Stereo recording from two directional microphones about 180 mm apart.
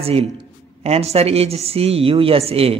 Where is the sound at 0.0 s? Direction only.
30° right (ahead or behind).